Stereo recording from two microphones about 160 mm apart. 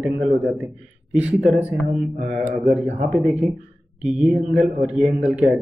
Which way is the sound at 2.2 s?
45° right (ahead or behind).